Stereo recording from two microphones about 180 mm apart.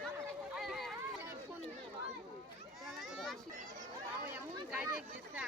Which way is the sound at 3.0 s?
Centre (ahead or behind).